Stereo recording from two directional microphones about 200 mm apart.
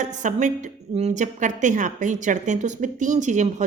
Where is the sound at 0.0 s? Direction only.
40° right (ahead or behind).